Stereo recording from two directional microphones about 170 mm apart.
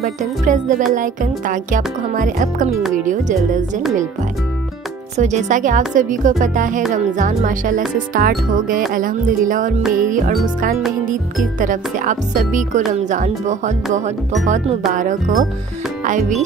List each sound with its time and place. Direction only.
0.0 s speech: 50° right (ahead or behind)
5.1 s speech: 45° right (ahead or behind)
11.6 s speech: 50° right (ahead or behind)
16.0 s music: 45° right (ahead or behind)